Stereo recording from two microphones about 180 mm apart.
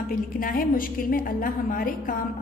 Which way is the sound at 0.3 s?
50° left (ahead or behind).